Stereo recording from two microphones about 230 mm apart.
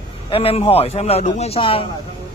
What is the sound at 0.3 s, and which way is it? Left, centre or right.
Speech, left.